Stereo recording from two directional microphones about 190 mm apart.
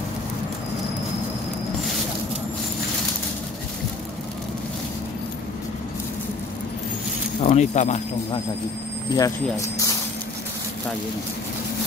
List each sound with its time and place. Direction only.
7.4 s speech: 40° left (ahead or behind)
9.1 s speech: 20° left (ahead or behind)